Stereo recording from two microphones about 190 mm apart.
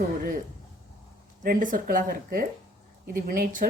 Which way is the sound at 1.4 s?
45° right (ahead or behind).